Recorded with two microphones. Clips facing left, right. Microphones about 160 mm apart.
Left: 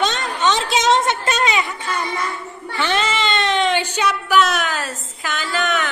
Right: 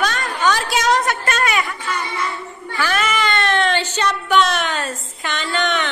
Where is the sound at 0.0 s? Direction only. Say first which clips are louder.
Even; 20° left (ahead or behind).